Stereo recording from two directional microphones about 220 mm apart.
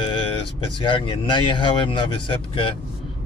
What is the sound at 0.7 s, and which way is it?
Speech, 20° left (ahead or behind).